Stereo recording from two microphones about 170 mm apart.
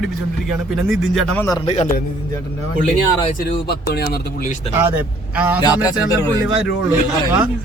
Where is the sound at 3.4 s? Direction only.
65° left (ahead or behind).